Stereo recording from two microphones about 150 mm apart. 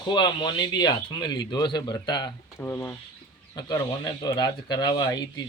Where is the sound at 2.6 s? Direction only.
15° left (ahead or behind).